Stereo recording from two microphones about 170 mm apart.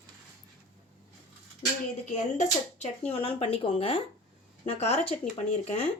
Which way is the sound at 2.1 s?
45° left (ahead or behind).